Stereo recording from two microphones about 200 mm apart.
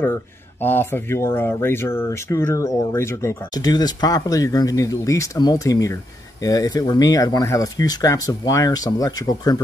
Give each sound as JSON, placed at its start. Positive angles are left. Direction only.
{"t": 0.6, "sound": "speech", "side_deg": 10}